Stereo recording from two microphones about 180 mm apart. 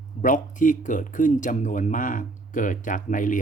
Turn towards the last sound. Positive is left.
turn(degrees=45)  # may be behind; listen again after turning